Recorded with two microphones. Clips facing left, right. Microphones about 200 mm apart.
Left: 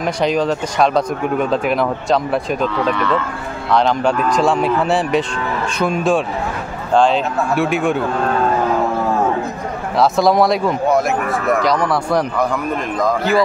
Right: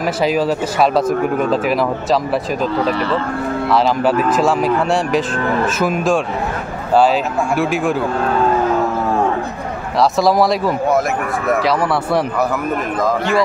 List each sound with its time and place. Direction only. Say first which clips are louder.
0.0 s speech: right 1 dB; 5° right (ahead or behind)
2.7 s speech: right 1 dB; 35° right (ahead or behind)
3.7 s speech: even; 5° right (ahead or behind)
9.9 s speech: even; centre (ahead or behind)